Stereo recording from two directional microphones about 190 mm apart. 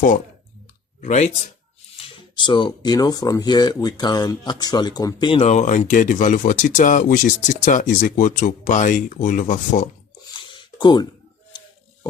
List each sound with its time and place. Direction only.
1.0 s speech: 35° left (ahead or behind)
2.0 s speech: 25° left (ahead or behind); by 9.9 s 40° left (ahead or behind)
10.5 s a sound: 25° left (ahead or behind)